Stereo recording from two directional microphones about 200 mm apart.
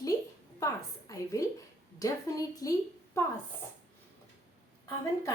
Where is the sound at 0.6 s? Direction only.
15° left (ahead or behind).